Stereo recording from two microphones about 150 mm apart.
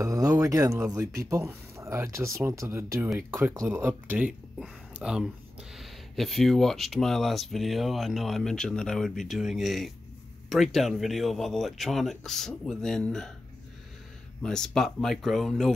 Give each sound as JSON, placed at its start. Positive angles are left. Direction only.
{"t": 0.0, "sound": "speech", "side_deg": -25}
{"t": 14.4, "sound": "speech", "side_deg": 5}